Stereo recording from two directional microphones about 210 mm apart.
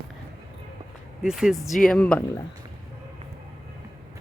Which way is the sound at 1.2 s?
Centre (ahead or behind).